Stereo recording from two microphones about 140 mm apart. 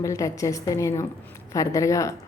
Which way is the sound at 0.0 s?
20° left (ahead or behind).